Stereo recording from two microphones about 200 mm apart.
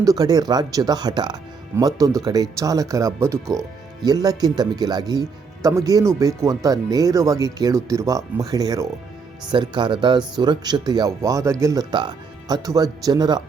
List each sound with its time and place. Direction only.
0.0 s speech: 15° right (ahead or behind)